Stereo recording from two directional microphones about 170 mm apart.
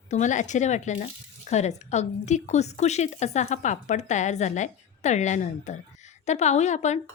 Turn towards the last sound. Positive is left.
turn(degrees=40)  # may be behind; listen again after turning